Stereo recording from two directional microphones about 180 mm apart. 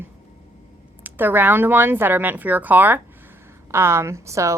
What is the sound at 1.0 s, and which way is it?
A woman's voice, 10° right (ahead or behind).